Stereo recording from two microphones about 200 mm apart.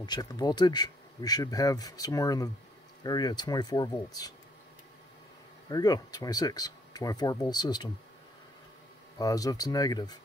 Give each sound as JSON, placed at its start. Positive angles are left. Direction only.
{"t": 0.0, "sound": "speech", "side_deg": 20}
{"t": 5.7, "sound": "speech", "side_deg": 20}
{"t": 9.2, "sound": "speech", "side_deg": 20}